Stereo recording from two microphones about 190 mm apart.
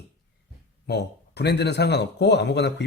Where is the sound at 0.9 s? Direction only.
60° left (ahead or behind).